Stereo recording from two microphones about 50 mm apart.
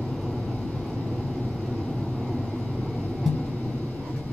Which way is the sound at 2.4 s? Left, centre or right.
Centre.